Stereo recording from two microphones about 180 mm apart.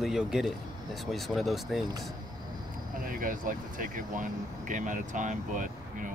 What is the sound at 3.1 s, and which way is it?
Speech, 50° right (ahead or behind).